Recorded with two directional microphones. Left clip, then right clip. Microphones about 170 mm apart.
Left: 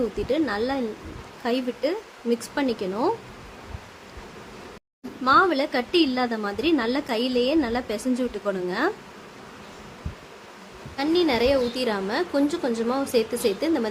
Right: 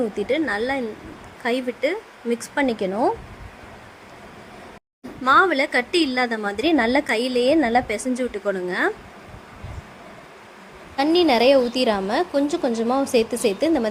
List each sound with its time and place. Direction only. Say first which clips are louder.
0.3 s a woman's voice: right 2 dB; 20° right (ahead or behind)
5.2 s a woman's voice: right 3 dB; 25° right (ahead or behind)
10.9 s a woman's voice: right 5 dB; 30° right (ahead or behind)